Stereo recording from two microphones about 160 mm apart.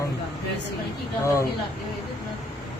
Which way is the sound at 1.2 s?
20° left (ahead or behind).